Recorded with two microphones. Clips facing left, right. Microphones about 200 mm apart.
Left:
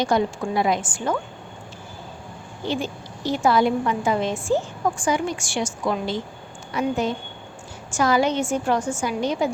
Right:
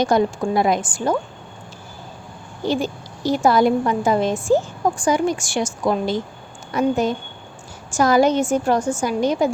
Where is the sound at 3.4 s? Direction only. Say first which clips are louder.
Right 3 dB; 40° right (ahead or behind).